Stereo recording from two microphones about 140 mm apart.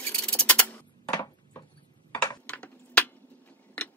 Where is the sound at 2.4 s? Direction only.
10° left (ahead or behind).